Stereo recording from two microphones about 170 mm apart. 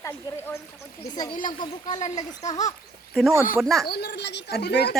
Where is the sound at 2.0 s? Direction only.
40° left (ahead or behind).